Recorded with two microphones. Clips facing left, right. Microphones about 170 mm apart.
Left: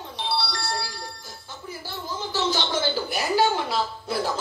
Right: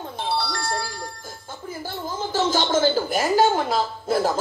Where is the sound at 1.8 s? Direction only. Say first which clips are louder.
Right 4 dB; 45° right (ahead or behind).